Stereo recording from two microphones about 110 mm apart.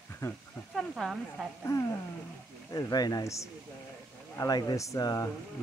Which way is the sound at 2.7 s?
35° left (ahead or behind).